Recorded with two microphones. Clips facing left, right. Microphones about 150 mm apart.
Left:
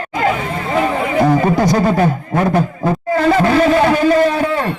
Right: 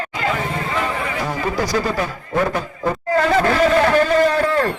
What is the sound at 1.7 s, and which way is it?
Speech, 50° left (ahead or behind).